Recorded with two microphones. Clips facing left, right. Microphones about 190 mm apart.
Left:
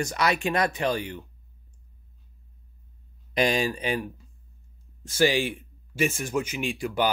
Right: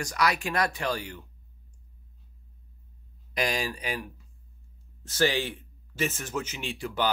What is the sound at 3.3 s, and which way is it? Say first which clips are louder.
Speech: left 6 dB; 25° left (ahead or behind).